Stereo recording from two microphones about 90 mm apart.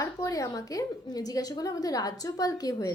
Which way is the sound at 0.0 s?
40° left (ahead or behind).